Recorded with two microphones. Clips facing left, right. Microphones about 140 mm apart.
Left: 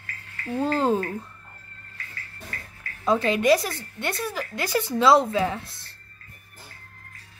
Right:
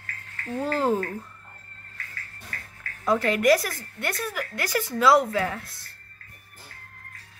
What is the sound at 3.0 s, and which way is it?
A woman's voice, 20° left (ahead or behind).